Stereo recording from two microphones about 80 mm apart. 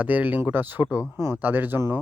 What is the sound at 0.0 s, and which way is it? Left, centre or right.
Speech, centre.